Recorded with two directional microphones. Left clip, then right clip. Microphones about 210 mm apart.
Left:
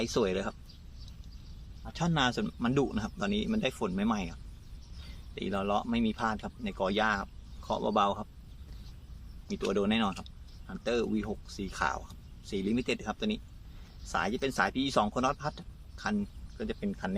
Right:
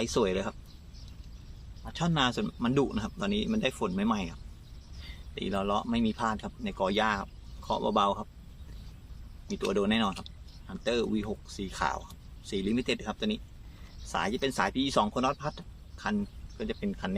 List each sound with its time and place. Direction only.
0.0 s speech: centre (ahead or behind)
1.8 s speech: 5° left (ahead or behind)
9.5 s speech: 10° left (ahead or behind)